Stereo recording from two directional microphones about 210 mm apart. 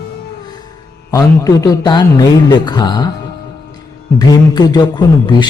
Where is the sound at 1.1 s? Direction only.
15° left (ahead or behind).